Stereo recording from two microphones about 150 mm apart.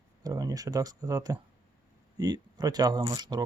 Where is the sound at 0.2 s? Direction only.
25° right (ahead or behind).